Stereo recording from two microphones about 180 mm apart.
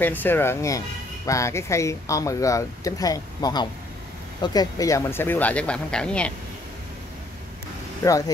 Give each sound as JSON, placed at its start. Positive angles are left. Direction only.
{"t": 0.0, "sound": "speech", "side_deg": 10}